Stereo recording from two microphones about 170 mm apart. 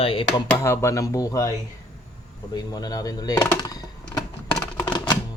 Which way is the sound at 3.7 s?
20° left (ahead or behind).